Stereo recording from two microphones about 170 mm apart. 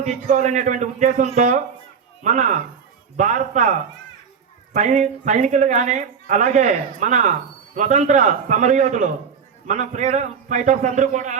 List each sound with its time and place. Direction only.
0.0 s speech: 45° right (ahead or behind)